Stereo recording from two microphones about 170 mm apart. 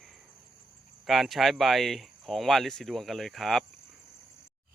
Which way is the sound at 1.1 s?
Centre (ahead or behind).